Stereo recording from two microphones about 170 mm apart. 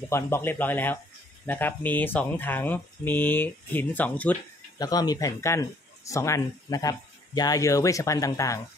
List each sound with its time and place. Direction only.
0.1 s speech: 15° left (ahead or behind)
4.7 s speech: 20° left (ahead or behind)